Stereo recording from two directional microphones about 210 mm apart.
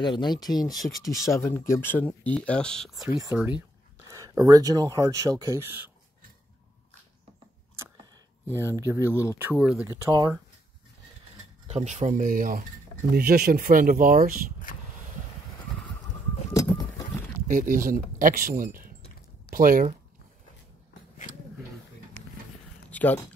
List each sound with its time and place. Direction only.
0.0 s speech: 20° left (ahead or behind)
0.7 s speech: centre (ahead or behind)
1.0 s speech: 15° left (ahead or behind); by 5.9 s 10° right (ahead or behind)
8.5 s speech: 10° right (ahead or behind)
9.8 s speech: 20° right (ahead or behind)
11.6 s speech: 35° right (ahead or behind)
16.5 s bird: 15° left (ahead or behind)
17.5 s speech: 40° right (ahead or behind)
22.8 s a sound: 10° left (ahead or behind)